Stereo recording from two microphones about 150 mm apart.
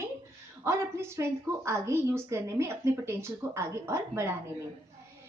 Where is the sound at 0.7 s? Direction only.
20° right (ahead or behind).